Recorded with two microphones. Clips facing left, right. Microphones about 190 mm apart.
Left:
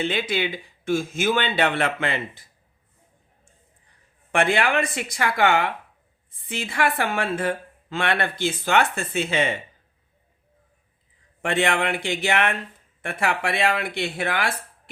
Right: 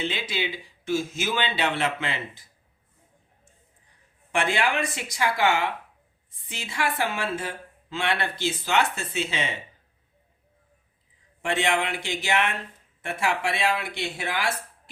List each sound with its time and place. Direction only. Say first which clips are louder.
0.0 s speech: left 5 dB; 55° left (ahead or behind)
4.3 s speech: left 4 dB; 60° left (ahead or behind)
11.4 s speech: left 3 dB; 55° left (ahead or behind)